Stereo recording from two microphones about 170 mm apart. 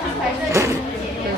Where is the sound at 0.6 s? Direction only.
15° right (ahead or behind).